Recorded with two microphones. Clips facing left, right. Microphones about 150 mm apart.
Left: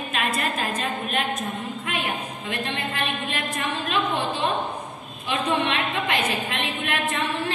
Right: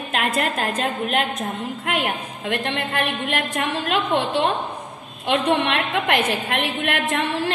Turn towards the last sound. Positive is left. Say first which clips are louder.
# right 3 dB
turn(degrees=-85)